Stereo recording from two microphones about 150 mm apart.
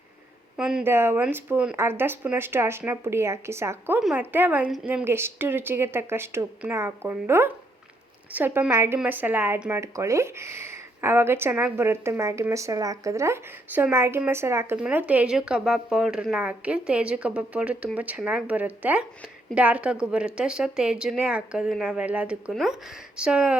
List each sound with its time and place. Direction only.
0.5 s speech: 5° right (ahead or behind)
0.9 s speech: 15° right (ahead or behind)